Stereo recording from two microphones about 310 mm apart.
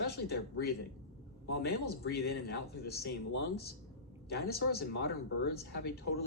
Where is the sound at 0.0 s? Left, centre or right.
Left.